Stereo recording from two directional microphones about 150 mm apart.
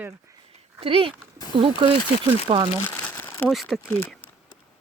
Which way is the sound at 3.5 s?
Centre (ahead or behind).